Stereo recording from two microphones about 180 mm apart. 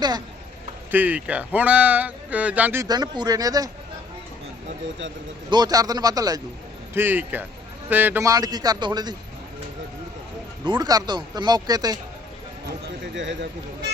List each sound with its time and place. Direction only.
0.9 s speech: 10° right (ahead or behind)
2.8 s speech: 20° right (ahead or behind)
5.5 s speech: 20° right (ahead or behind)
10.6 s speech: 25° right (ahead or behind)